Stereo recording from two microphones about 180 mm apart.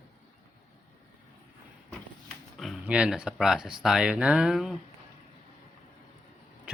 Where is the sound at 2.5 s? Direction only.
5° right (ahead or behind).